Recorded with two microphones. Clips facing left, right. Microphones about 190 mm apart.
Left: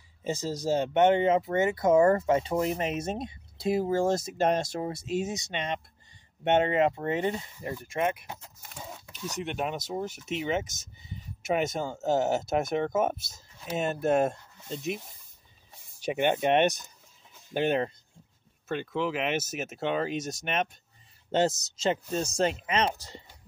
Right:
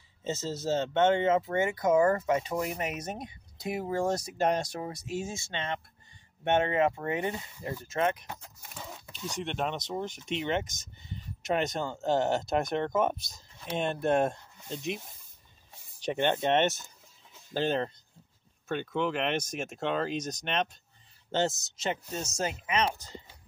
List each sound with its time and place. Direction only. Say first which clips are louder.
0.2 s speech: left 2 dB; 15° left (ahead or behind)
9.4 s speech: left 1 dB; 5° left (ahead or behind)
16.0 s speech: left 2 dB; 10° left (ahead or behind)
22.1 s speech: left 6 dB; 30° left (ahead or behind)